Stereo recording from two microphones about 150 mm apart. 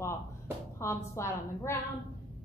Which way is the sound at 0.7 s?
20° left (ahead or behind).